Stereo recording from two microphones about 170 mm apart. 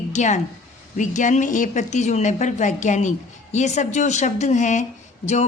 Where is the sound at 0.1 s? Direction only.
45° left (ahead or behind).